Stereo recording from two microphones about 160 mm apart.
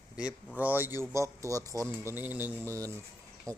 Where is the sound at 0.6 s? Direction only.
10° right (ahead or behind).